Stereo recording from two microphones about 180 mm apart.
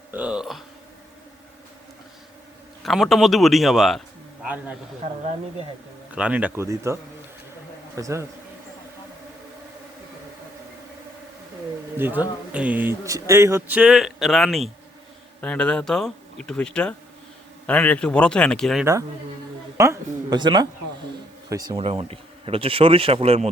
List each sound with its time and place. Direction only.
0.1 s speech: 5° right (ahead or behind)
2.8 s a man's voice: centre (ahead or behind)
6.1 s a man's voice: 5° right (ahead or behind)
11.9 s a man's voice: 10° right (ahead or behind)
19.7 s speech: 15° right (ahead or behind); by 23.5 s 35° right (ahead or behind)